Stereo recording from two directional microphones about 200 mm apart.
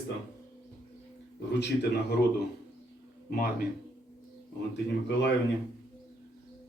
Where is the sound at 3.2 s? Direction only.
45° left (ahead or behind).